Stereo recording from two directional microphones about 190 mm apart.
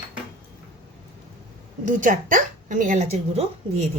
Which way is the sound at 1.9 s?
45° right (ahead or behind).